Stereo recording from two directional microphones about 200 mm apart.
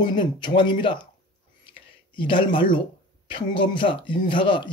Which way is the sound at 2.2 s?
25° left (ahead or behind).